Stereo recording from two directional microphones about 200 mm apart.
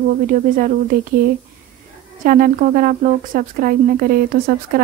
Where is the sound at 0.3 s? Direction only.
45° right (ahead or behind).